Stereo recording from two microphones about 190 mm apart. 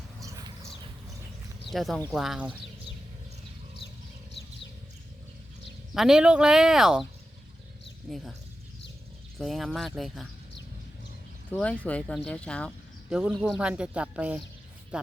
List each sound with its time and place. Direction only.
0.2 s a sound: 20° right (ahead or behind)
1.7 s speech: centre (ahead or behind)
5.9 s speech: centre (ahead or behind)
8.1 s speech: centre (ahead or behind)
9.4 s speech: centre (ahead or behind)
11.5 s speech: 5° left (ahead or behind)